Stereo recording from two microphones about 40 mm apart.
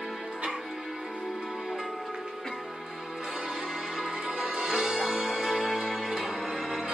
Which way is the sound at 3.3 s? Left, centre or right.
Centre.